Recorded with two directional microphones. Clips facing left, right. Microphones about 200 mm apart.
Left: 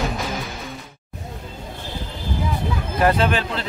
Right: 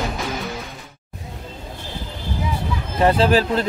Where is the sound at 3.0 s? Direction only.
30° right (ahead or behind).